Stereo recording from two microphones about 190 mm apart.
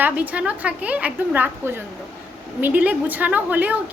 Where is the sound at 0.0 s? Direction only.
10° right (ahead or behind).